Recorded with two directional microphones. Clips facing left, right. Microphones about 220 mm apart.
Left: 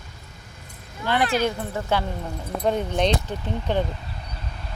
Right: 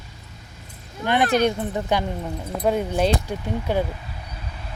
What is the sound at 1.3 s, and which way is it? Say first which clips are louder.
Speech: right 4 dB; 20° right (ahead or behind).